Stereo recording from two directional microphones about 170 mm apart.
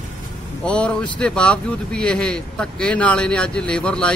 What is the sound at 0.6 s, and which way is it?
Speech, 5° left (ahead or behind).